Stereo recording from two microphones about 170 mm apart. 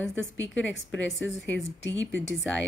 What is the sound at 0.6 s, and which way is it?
Speech, 10° left (ahead or behind).